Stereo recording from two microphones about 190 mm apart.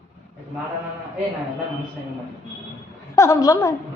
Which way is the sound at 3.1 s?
15° left (ahead or behind).